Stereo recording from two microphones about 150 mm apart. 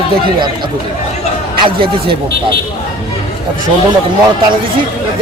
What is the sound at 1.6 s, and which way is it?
Speech, 35° right (ahead or behind).